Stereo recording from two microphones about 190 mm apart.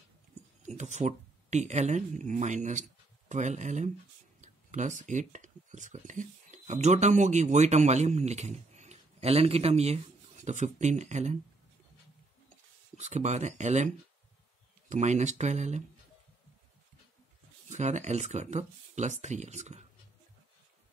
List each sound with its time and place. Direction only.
0.6 s speech: 40° right (ahead or behind)
12.9 s speech: 40° right (ahead or behind)
14.9 s speech: 40° right (ahead or behind)
17.6 s speech: 40° right (ahead or behind)